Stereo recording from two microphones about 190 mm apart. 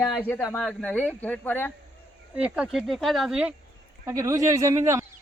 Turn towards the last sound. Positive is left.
turn(degrees=-15)  # may be behind; listen again after turning